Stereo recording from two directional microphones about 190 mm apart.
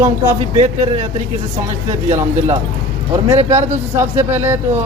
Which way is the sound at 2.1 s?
40° right (ahead or behind).